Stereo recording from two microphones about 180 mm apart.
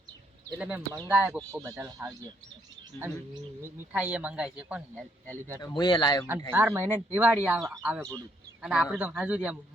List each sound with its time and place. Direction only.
0.6 s speech: 5° right (ahead or behind)
3.6 s speech: 10° right (ahead or behind)
4.9 s speech: 10° left (ahead or behind)
5.6 s speech: 25° left (ahead or behind)
6.5 s speech: 15° right (ahead or behind)